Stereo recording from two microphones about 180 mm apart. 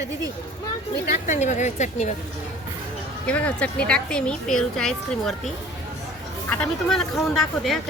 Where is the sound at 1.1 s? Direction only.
40° left (ahead or behind).